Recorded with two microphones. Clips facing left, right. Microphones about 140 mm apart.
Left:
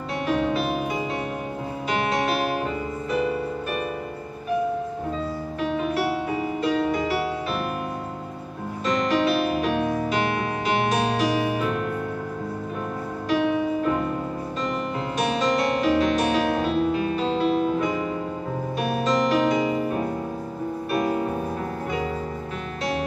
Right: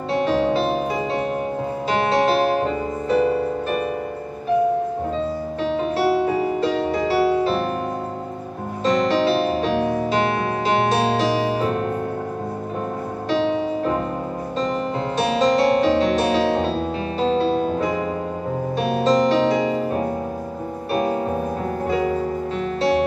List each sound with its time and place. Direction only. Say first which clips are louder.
0.1 s music: right 5 dB; 30° right (ahead or behind)
1.9 s music: right 5 dB; 30° right (ahead or behind)
5.6 s music: right 3 dB; 30° right (ahead or behind)
8.8 s music: right 4 dB; 30° right (ahead or behind)
13.3 s music: right 1 dB; 30° right (ahead or behind)
15.1 s music: right 5 dB; 30° right (ahead or behind)
22.8 s music: right 8 dB; 30° right (ahead or behind)